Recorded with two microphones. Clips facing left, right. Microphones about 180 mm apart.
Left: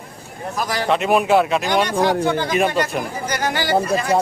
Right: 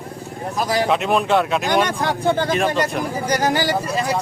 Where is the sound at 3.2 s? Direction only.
40° right (ahead or behind).